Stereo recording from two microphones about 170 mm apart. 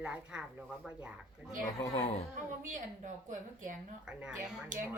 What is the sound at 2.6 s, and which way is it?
A woman's voice, 50° right (ahead or behind).